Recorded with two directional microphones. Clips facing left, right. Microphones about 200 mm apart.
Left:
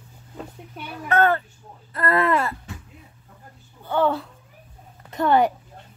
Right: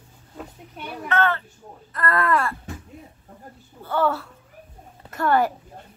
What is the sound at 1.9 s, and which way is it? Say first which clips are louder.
Speech: left 2 dB; 25° left (ahead or behind).